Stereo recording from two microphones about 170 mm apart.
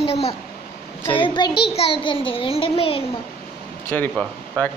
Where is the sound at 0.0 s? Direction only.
35° left (ahead or behind).